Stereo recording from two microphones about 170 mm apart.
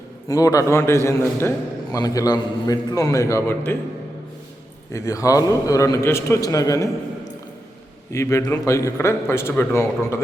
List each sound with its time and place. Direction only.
0.3 s a man's voice: 20° left (ahead or behind)
4.9 s a man's voice: 20° left (ahead or behind)
8.1 s a man's voice: 15° left (ahead or behind)